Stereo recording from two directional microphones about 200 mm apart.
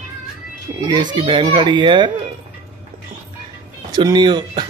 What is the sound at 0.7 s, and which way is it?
Children playing, 20° right (ahead or behind).